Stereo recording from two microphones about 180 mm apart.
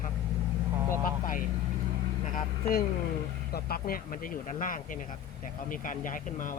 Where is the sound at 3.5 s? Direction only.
55° left (ahead or behind).